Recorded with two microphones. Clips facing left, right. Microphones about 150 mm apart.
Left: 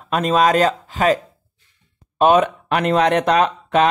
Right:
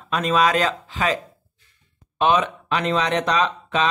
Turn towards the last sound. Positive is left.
turn(degrees=55)  # may be behind; listen again after turning